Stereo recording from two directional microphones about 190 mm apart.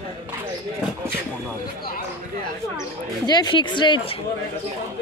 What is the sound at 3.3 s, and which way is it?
Speech, 20° left (ahead or behind).